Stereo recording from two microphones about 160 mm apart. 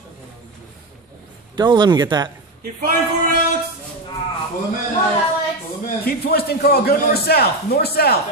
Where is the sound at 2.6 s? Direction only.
70° right (ahead or behind).